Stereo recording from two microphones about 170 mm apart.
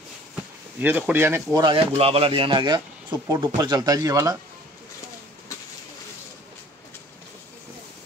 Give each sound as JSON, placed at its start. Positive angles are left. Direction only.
{"t": 0.7, "sound": "speech", "side_deg": -10}
{"t": 2.0, "sound": "speech", "side_deg": -35}